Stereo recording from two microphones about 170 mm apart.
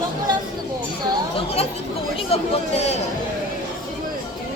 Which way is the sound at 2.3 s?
40° left (ahead or behind).